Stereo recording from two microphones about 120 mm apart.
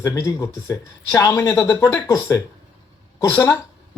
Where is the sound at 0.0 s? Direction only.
25° left (ahead or behind).